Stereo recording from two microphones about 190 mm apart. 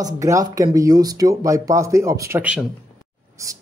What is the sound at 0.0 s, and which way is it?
Speech, 15° right (ahead or behind).